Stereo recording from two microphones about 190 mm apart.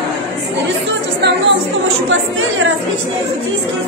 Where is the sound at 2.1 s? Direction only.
90° right.